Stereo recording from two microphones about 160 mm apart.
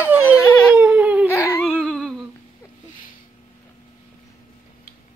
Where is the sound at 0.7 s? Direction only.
10° right (ahead or behind).